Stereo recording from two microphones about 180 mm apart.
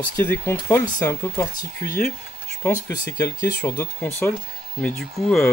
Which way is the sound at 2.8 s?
15° left (ahead or behind).